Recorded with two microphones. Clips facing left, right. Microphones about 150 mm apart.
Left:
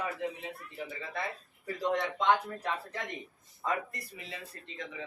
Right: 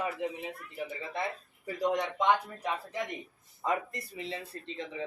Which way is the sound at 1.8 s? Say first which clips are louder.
Right 2 dB; 15° right (ahead or behind).